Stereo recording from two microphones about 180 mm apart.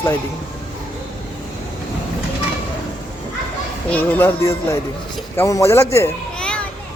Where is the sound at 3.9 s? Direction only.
10° left (ahead or behind).